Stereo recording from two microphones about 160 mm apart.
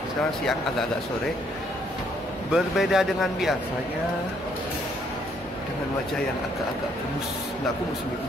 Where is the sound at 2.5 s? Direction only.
Centre (ahead or behind).